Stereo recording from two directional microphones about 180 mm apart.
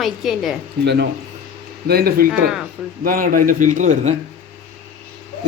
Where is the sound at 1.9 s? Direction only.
60° right (ahead or behind); by 4.1 s 45° right (ahead or behind).